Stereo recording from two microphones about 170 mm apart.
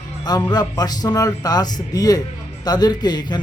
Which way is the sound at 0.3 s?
25° left (ahead or behind).